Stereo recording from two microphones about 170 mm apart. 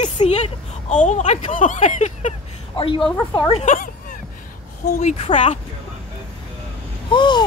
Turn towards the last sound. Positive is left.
turn(degrees=25)  # may be behind; listen again after turning